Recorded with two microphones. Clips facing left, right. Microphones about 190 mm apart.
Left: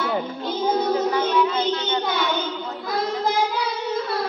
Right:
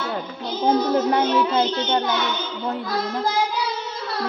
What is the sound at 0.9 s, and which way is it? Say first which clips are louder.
Music: right 1 dB; 60° right (ahead or behind).